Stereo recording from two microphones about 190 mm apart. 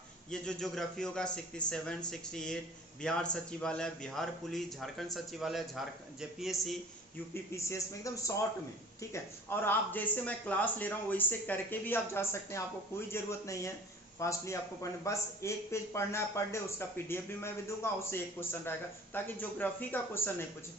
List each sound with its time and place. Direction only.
0.3 s a man's voice: 5° left (ahead or behind)
7.5 s a man's voice: 15° left (ahead or behind)